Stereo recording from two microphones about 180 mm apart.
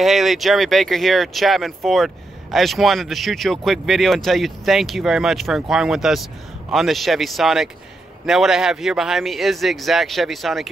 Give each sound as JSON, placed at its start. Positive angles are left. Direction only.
{"t": 0.0, "sound": "speech", "side_deg": 0}